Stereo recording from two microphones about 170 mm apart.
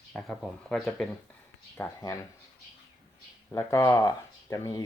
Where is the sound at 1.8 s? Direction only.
15° left (ahead or behind).